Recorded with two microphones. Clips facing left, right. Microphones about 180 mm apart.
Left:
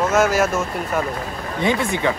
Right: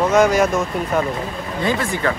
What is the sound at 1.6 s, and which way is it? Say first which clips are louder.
Speech: left 1 dB; 20° left (ahead or behind).